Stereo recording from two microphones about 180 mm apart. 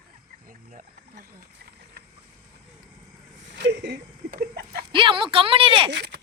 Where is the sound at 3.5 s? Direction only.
70° right (ahead or behind).